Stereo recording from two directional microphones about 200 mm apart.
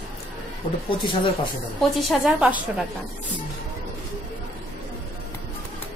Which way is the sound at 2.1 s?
5° right (ahead or behind).